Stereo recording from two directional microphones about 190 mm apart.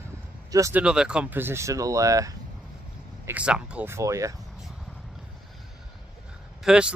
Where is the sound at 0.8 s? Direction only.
5° right (ahead or behind).